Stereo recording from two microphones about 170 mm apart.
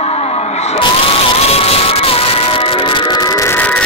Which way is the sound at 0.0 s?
35° left (ahead or behind).